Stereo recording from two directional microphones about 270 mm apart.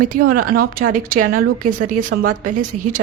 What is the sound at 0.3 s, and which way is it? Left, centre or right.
Speech, right.